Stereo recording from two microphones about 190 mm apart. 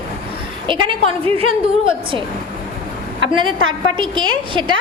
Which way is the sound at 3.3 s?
25° right (ahead or behind).